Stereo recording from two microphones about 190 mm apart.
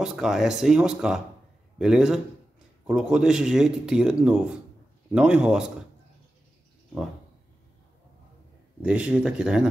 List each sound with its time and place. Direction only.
0.0 s speech: centre (ahead or behind)
8.8 s speech: 5° right (ahead or behind)